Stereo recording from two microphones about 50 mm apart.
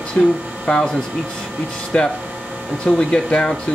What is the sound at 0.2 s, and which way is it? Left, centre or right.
Speech, left.